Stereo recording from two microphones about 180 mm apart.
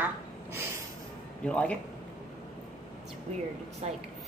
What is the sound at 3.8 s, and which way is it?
Speech, 40° right (ahead or behind).